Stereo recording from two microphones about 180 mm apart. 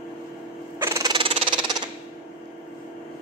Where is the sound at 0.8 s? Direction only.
20° right (ahead or behind).